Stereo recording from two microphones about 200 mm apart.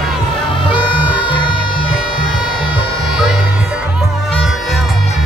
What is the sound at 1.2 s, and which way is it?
Music, 25° left (ahead or behind).